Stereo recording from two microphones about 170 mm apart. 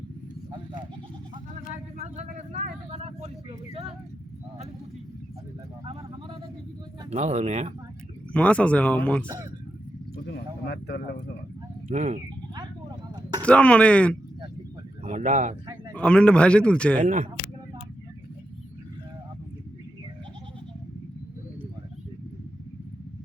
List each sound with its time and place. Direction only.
1.7 s speech: 45° right (ahead or behind)
7.1 s speech: 40° right (ahead or behind)
8.3 s a man's voice: 5° left (ahead or behind)
9.2 s a man's voice: 20° right (ahead or behind)
10.2 s a sound: 80° left
11.9 s speech: 40° right (ahead or behind)
13.4 s a man's voice: 5° left (ahead or behind)
15.0 s speech: 45° right (ahead or behind)
16.0 s a man's voice: 5° left (ahead or behind)
17.0 s speech: 45° right (ahead or behind)